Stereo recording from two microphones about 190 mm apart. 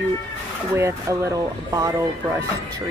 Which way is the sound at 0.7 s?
15° right (ahead or behind).